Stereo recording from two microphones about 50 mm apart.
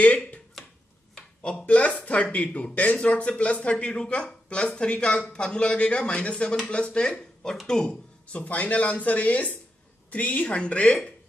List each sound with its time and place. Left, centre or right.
0.0 s speech: left
1.4 s a man's voice: centre
8.3 s a man's voice: left